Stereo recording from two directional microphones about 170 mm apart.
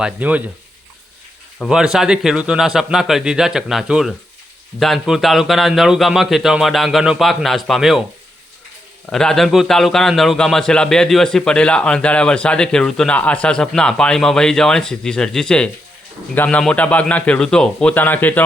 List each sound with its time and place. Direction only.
0.0 s speech: 10° right (ahead or behind)
1.5 s a man's voice: centre (ahead or behind)
9.0 s a man's voice: 5° left (ahead or behind)